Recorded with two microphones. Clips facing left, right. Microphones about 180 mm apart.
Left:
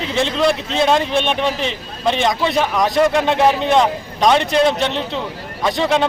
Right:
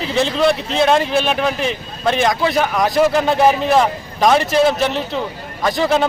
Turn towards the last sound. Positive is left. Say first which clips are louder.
# right 1 dB
turn(degrees=0)  # may be behind; listen again after turning